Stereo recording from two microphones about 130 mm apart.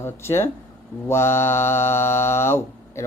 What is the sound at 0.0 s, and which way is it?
Speech, 20° left (ahead or behind).